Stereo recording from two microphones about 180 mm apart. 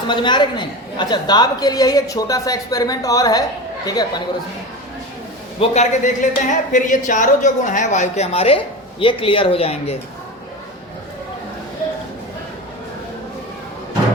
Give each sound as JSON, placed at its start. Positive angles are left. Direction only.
{"t": 0.1, "sound": "a woman's voice", "side_deg": 25}
{"t": 5.5, "sound": "speech", "side_deg": 40}